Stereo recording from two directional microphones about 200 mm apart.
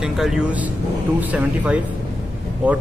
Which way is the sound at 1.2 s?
10° right (ahead or behind).